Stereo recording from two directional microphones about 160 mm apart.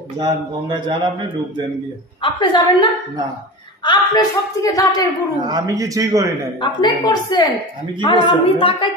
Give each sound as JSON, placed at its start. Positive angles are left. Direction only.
{"t": 0.2, "sound": "speech", "side_deg": -30}
{"t": 2.2, "sound": "speech", "side_deg": 30}
{"t": 5.4, "sound": "speech", "side_deg": -25}
{"t": 6.6, "sound": "a woman's voice", "side_deg": 25}